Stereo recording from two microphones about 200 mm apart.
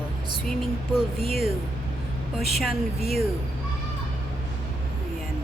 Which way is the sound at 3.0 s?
30° right (ahead or behind).